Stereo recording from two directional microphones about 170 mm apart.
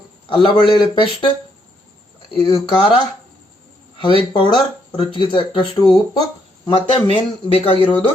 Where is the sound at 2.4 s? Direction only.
30° left (ahead or behind).